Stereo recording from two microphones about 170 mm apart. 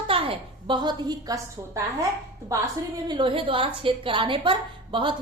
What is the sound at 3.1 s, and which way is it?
A woman's voice, 30° right (ahead or behind).